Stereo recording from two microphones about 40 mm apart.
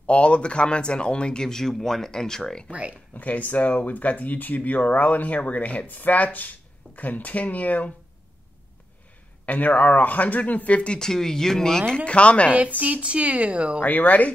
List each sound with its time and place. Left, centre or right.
0.0 s speech: left; by 2.6 s centre
2.7 s speech: right
3.2 s speech: left
5.9 s speech: left
9.5 s speech: left
11.0 s speech: centre
12.1 s speech: left
12.5 s speech: right
13.7 s speech: left